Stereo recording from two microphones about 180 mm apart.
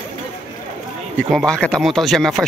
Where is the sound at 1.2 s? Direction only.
Centre (ahead or behind).